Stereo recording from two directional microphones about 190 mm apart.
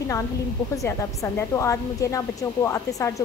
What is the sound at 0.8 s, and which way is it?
A woman's voice, 15° left (ahead or behind).